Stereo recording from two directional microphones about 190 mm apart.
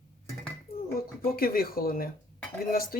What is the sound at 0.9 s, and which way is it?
Speech, 50° left (ahead or behind).